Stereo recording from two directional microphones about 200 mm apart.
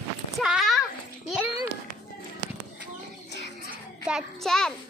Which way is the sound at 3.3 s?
60° left (ahead or behind).